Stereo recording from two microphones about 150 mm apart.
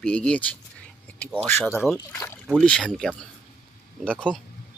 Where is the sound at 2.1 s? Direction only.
15° left (ahead or behind).